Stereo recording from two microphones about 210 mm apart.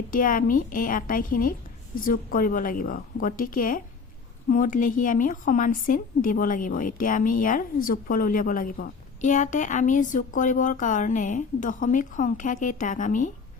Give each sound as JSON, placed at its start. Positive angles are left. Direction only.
{"t": 0.1, "sound": "speech", "side_deg": 40}